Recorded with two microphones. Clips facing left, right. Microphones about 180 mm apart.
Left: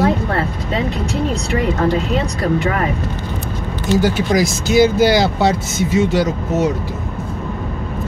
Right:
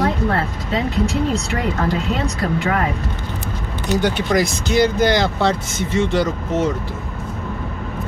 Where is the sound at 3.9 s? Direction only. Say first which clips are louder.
Left 2 dB; 5° left (ahead or behind).